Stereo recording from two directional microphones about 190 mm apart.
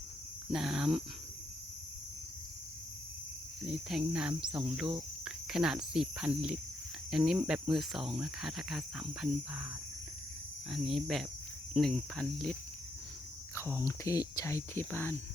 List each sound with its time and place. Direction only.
0.5 s cricket: centre (ahead or behind)
3.7 s cricket: 5° right (ahead or behind)
5.2 s speech: 5° right (ahead or behind)
7.1 s cricket: centre (ahead or behind)
10.7 s cricket: centre (ahead or behind)
13.8 s speech: 15° left (ahead or behind)